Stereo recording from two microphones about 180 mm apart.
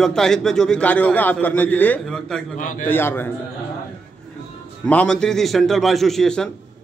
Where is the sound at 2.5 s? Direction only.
45° left (ahead or behind).